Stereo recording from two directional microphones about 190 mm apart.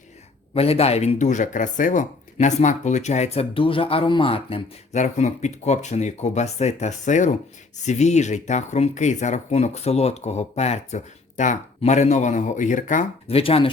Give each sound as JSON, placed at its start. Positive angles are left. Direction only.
{"t": 0.5, "sound": "speech", "side_deg": 30}